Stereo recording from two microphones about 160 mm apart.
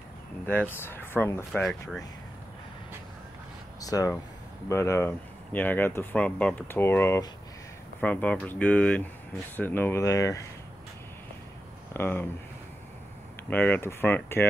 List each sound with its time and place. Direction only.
0.5 s speech: 10° left (ahead or behind)
1.6 s speech: centre (ahead or behind)
3.8 s speech: 20° left (ahead or behind)
11.9 s speech: 15° left (ahead or behind)
13.5 s speech: 10° left (ahead or behind)